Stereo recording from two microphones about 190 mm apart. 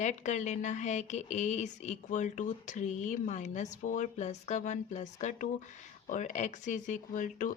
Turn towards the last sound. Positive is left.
turn(degrees=45)  # may be behind; listen again after turning